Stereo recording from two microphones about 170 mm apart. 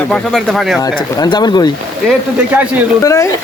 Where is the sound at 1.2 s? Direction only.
25° left (ahead or behind).